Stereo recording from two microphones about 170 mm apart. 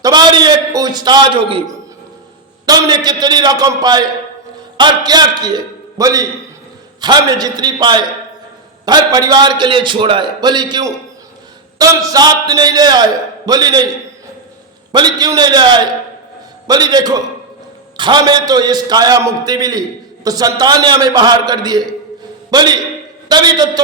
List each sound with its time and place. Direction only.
0.0 s a man's voice: 25° right (ahead or behind)
14.9 s a man's voice: 25° right (ahead or behind)